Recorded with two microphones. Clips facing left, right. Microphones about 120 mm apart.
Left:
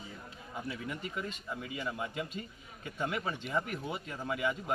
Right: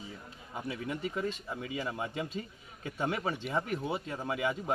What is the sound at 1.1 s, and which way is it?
A man's voice, 30° right (ahead or behind).